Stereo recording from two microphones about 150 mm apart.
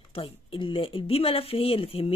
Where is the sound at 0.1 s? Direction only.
35° left (ahead or behind).